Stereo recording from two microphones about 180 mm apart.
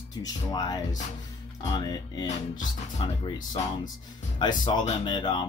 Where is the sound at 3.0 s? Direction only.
25° left (ahead or behind).